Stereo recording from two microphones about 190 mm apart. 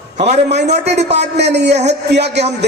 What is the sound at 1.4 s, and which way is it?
A woman's voice, 65° right (ahead or behind).